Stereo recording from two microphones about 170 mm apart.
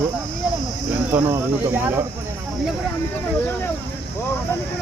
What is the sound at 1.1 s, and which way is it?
Speech, 10° right (ahead or behind).